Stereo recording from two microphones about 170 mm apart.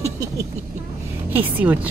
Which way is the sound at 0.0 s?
20° right (ahead or behind).